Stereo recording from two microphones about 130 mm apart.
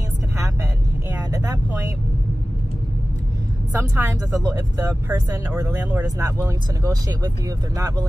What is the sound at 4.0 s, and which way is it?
Speech, 25° right (ahead or behind).